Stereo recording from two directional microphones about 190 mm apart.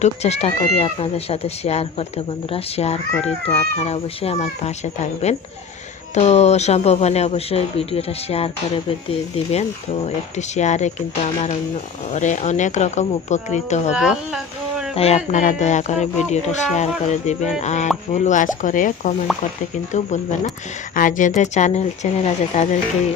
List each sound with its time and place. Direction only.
0.0 s speech: 35° left (ahead or behind)
12.1 s speech: 40° left (ahead or behind)
13.9 s speech: 5° right (ahead or behind)
14.9 s speech: 35° left (ahead or behind)